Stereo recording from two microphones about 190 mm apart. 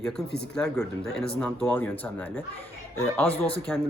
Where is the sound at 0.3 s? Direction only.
60° left (ahead or behind).